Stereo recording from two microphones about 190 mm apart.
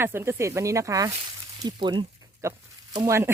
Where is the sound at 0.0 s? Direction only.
10° right (ahead or behind).